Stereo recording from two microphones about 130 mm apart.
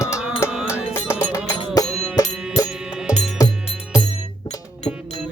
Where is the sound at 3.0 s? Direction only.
55° left (ahead or behind).